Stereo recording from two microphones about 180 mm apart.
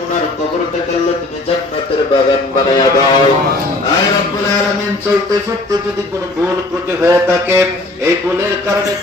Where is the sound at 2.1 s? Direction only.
25° left (ahead or behind).